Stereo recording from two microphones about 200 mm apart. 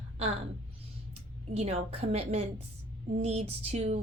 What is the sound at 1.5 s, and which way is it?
A woman's voice, 30° right (ahead or behind).